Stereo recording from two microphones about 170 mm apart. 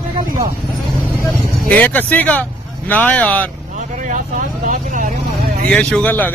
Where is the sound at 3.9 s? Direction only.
50° right (ahead or behind).